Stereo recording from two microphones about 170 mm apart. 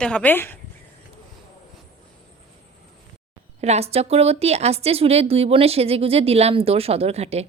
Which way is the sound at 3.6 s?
40° right (ahead or behind).